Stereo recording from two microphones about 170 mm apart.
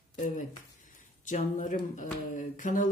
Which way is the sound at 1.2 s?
45° left (ahead or behind).